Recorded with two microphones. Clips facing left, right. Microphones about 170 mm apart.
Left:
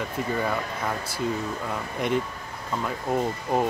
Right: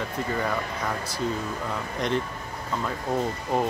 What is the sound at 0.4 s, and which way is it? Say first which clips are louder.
Speech: left 1 dB; 5° left (ahead or behind).